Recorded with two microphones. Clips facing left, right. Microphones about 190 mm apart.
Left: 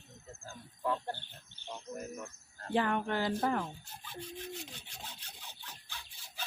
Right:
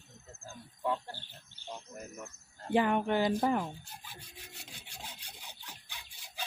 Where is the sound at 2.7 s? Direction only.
15° right (ahead or behind).